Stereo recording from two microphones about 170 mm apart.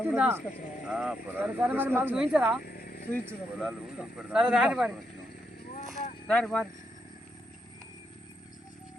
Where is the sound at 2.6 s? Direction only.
60° left (ahead or behind).